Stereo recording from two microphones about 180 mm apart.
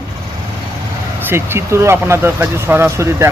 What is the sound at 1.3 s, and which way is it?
Speech, 15° right (ahead or behind).